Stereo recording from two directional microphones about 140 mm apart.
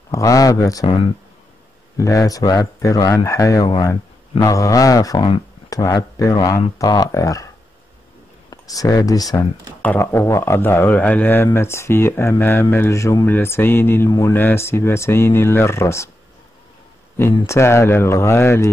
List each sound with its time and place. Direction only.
0.1 s speech: 25° left (ahead or behind)
2.0 s speech: 25° left (ahead or behind)
9.8 s speech: 15° left (ahead or behind)
17.5 s speech: 20° left (ahead or behind)